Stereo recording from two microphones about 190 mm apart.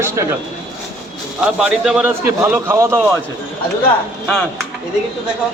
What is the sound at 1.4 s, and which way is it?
A man's voice, 5° right (ahead or behind).